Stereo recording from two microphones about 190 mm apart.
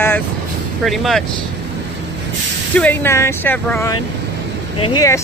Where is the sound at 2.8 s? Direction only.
10° left (ahead or behind).